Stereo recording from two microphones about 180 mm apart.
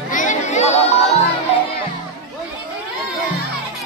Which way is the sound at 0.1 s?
45° left (ahead or behind).